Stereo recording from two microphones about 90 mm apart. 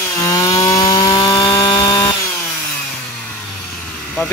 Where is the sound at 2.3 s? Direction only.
15° left (ahead or behind).